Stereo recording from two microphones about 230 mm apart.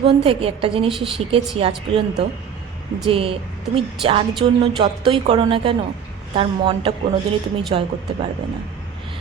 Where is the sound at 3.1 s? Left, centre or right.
Right.